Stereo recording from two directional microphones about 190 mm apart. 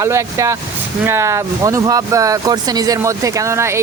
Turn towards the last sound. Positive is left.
turn(degrees=-15)  # may be behind; listen again after turning